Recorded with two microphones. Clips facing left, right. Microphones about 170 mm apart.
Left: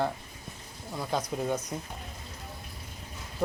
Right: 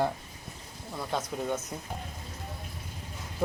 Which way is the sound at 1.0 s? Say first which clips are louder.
Left 2 dB; 5° left (ahead or behind).